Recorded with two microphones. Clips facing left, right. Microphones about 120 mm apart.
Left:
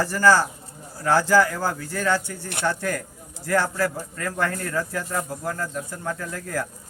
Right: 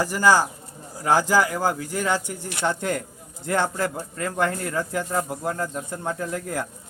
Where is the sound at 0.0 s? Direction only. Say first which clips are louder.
Even; 15° right (ahead or behind).